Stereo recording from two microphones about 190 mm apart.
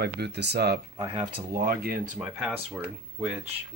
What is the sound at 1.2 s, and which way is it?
Speech, 50° right (ahead or behind).